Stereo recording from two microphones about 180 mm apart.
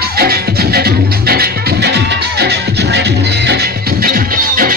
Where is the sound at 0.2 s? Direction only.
60° right (ahead or behind).